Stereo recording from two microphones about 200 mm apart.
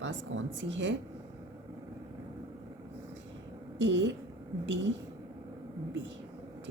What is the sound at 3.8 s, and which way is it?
Speech, 65° right (ahead or behind).